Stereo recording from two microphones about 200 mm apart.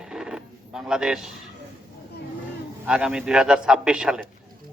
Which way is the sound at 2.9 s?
5° right (ahead or behind).